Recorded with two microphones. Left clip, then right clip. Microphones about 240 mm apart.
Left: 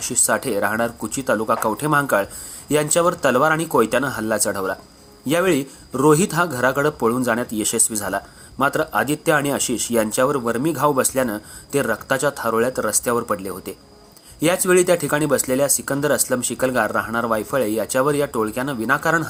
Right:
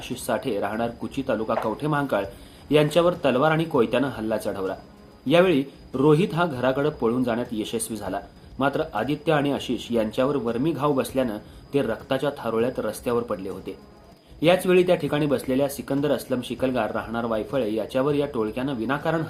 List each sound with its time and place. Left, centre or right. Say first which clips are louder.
0.0 s speech: left 6 dB; left
14.4 s speech: left 2 dB; left